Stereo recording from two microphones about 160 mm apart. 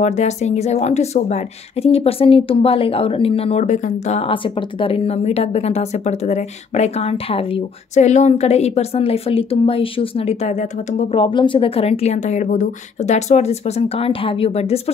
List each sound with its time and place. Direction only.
0.0 s speech: 45° left (ahead or behind)